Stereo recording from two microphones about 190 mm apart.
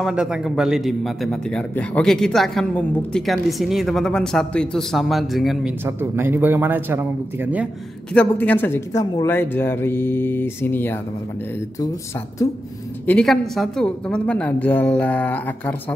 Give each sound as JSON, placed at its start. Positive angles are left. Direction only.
{"t": 0.0, "sound": "a man's voice", "side_deg": -5}
{"t": 5.9, "sound": "a man's voice", "side_deg": -10}
{"t": 8.1, "sound": "a woman's voice", "side_deg": 10}
{"t": 12.4, "sound": "a woman's voice", "side_deg": 15}
{"t": 13.0, "sound": "a woman's voice", "side_deg": 5}